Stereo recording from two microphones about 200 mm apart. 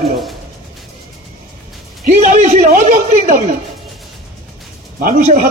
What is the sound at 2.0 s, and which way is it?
A man's voice, 40° right (ahead or behind).